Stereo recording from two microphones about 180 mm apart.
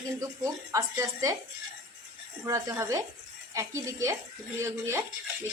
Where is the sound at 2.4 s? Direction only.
15° right (ahead or behind).